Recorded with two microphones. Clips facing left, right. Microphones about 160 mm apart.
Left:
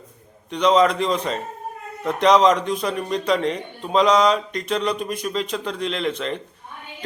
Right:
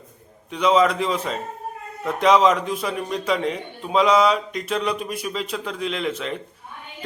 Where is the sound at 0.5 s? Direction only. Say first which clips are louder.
Left 1 dB; 5° right (ahead or behind).